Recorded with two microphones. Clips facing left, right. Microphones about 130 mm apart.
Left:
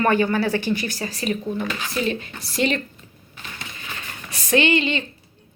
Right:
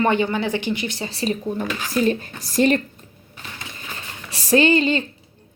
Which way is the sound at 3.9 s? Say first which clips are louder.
Even; 35° right (ahead or behind).